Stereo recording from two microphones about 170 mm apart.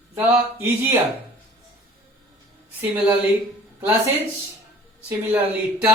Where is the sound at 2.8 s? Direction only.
10° right (ahead or behind).